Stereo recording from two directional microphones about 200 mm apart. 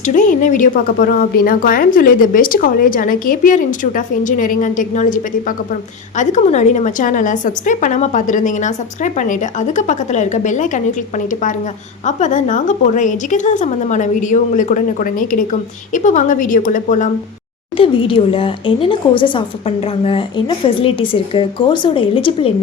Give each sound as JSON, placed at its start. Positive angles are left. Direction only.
{"t": 0.0, "sound": "a woman's voice", "side_deg": 40}
{"t": 12.0, "sound": "a woman's voice", "side_deg": 40}
{"t": 17.7, "sound": "a woman's voice", "side_deg": 25}